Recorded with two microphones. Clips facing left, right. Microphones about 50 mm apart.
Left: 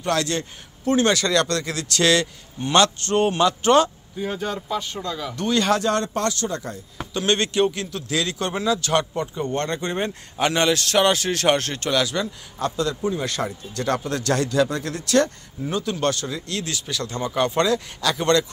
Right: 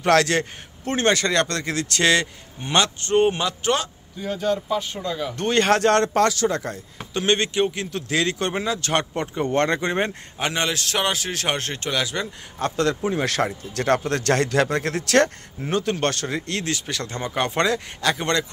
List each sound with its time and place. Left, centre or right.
0.0 s a man's voice: right
1.1 s a man's voice: right
3.4 s speech: centre
4.6 s a man's voice: centre
5.3 s speech: right
7.2 s a man's voice: centre
7.9 s speech: right
9.1 s speech: right
10.4 s a man's voice: centre
12.7 s speech: right
15.6 s speech: right